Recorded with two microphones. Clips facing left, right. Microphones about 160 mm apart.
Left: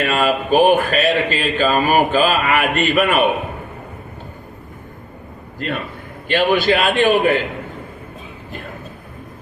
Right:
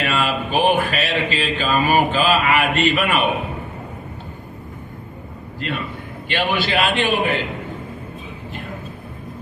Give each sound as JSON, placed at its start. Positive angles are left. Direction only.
{"t": 0.0, "sound": "speech", "side_deg": 45}
{"t": 6.2, "sound": "speech", "side_deg": 45}